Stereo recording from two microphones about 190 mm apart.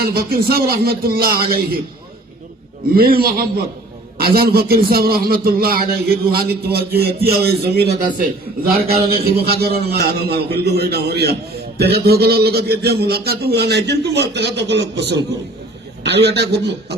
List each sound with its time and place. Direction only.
0.0 s speech: 55° right (ahead or behind)
2.9 s a man's voice: 50° right (ahead or behind)